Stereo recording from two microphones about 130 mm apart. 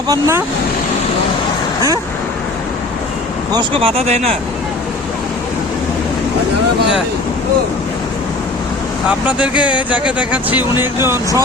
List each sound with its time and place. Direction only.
0.1 s speech: 20° right (ahead or behind)
3.5 s speech: 40° right (ahead or behind)
9.0 s speech: 10° right (ahead or behind)